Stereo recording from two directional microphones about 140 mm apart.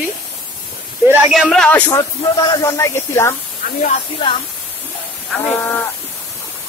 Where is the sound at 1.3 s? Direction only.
Centre (ahead or behind).